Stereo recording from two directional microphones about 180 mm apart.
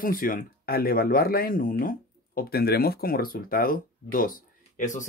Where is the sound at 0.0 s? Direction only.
50° left (ahead or behind).